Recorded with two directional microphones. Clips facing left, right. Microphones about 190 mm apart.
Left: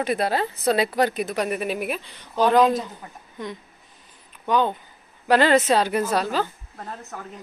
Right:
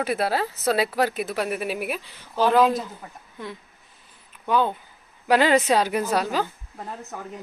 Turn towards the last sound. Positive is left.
turn(degrees=-10)  # may be behind; listen again after turning